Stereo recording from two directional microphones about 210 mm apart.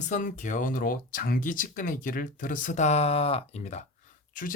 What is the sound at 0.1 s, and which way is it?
Speech, 40° left (ahead or behind).